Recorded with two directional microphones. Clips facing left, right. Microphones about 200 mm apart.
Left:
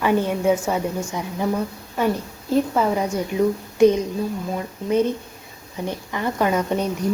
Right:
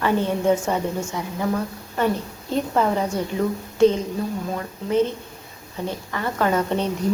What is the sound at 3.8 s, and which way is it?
A woman's voice, 15° left (ahead or behind).